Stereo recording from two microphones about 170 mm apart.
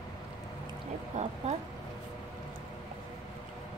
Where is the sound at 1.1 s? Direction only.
45° right (ahead or behind).